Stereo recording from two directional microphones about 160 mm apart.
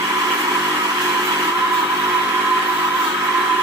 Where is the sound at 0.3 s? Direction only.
20° right (ahead or behind).